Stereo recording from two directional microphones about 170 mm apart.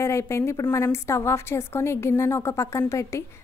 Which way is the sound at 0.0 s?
15° left (ahead or behind).